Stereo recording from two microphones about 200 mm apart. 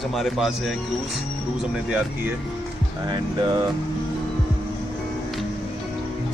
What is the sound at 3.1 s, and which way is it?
Speech, 20° right (ahead or behind).